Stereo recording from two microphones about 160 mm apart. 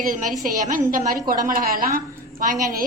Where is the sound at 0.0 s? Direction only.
55° right (ahead or behind).